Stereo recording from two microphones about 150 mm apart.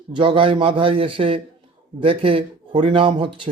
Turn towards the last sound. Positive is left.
turn(degrees=-35)  # may be behind; listen again after turning